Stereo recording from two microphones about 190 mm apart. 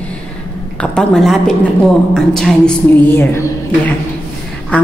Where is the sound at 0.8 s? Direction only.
5° left (ahead or behind).